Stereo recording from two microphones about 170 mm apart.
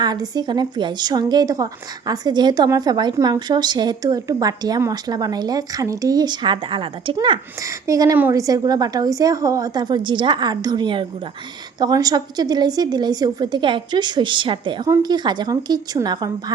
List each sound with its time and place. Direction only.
0.0 s a woman's voice: 25° right (ahead or behind)